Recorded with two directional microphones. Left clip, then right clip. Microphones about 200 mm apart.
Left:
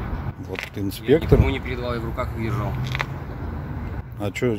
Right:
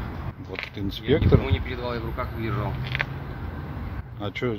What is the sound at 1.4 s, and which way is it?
Speech, 55° left (ahead or behind).